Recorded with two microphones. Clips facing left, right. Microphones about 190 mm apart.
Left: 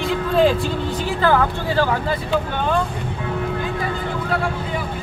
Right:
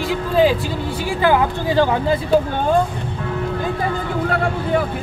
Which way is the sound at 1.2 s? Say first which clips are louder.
Right 2 dB; 15° right (ahead or behind).